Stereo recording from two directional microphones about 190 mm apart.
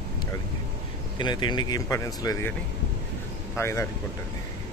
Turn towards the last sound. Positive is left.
turn(degrees=15)  # may be behind; listen again after turning